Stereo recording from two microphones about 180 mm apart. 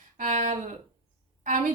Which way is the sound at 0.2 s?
45° right (ahead or behind).